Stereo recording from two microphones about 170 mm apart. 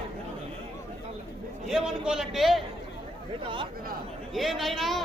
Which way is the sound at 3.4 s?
30° right (ahead or behind).